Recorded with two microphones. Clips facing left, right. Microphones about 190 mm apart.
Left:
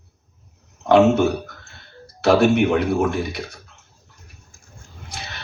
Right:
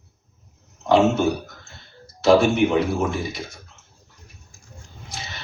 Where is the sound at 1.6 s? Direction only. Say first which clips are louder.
Left 2 dB; 65° left (ahead or behind).